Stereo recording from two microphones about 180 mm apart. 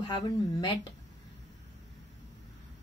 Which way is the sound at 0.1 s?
30° left (ahead or behind).